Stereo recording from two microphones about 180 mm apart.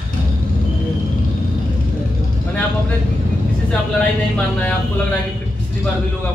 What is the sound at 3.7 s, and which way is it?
Speech, 5° left (ahead or behind).